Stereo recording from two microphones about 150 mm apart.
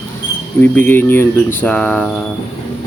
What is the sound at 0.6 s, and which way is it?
Speech, 15° left (ahead or behind).